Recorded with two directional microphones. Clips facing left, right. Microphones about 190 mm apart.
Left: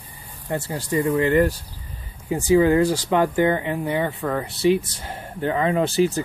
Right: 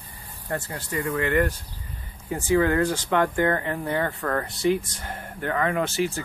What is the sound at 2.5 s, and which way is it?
Speech, 20° left (ahead or behind).